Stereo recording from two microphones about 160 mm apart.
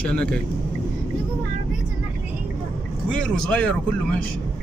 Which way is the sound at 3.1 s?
5° left (ahead or behind).